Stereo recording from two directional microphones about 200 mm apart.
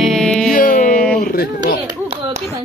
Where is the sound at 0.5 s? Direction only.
40° left (ahead or behind).